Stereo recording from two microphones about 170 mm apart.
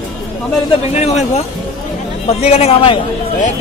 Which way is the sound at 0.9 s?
40° left (ahead or behind).